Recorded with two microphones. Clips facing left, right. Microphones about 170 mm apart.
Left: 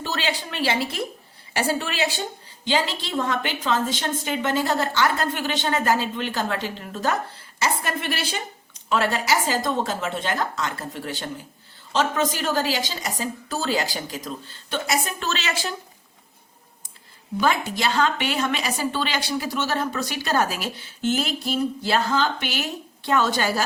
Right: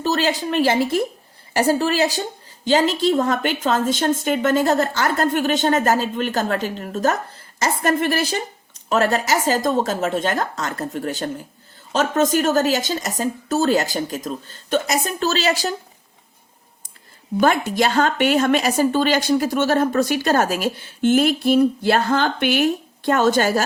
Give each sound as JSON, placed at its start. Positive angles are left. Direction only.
{"t": 0.0, "sound": "a woman's voice", "side_deg": -40}
{"t": 17.3, "sound": "a woman's voice", "side_deg": -50}